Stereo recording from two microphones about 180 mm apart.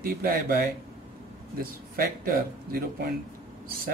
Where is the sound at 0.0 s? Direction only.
55° right (ahead or behind).